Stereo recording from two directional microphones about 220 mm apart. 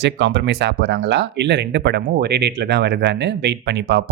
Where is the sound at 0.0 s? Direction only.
50° right (ahead or behind).